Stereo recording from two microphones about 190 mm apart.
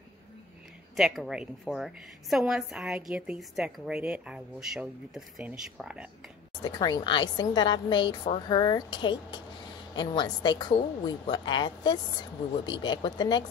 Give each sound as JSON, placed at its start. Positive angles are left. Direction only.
{"t": 0.9, "sound": "a woman's voice", "side_deg": 0}
{"t": 6.6, "sound": "a woman's voice", "side_deg": 20}